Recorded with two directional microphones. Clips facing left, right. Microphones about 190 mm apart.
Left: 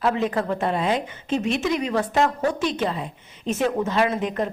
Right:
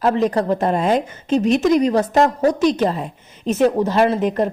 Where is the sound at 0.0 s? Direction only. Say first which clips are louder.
Right 5 dB; 40° right (ahead or behind).